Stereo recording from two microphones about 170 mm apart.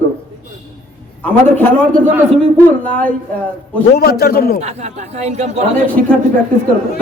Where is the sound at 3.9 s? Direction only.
65° left (ahead or behind).